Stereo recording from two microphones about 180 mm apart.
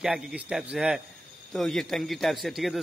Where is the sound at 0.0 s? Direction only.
5° right (ahead or behind).